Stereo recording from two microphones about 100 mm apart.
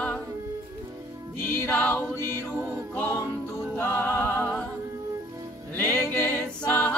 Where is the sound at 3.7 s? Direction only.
25° left (ahead or behind).